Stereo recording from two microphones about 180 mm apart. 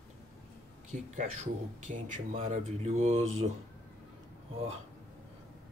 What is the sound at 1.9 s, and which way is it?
Speech, 45° right (ahead or behind).